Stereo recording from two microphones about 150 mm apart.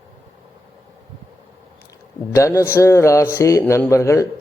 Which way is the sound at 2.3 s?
20° left (ahead or behind).